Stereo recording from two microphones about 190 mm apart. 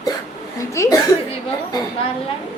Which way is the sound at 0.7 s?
15° left (ahead or behind).